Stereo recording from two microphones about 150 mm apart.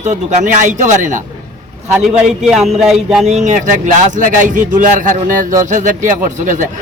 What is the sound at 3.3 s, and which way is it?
A man's voice, 50° right (ahead or behind).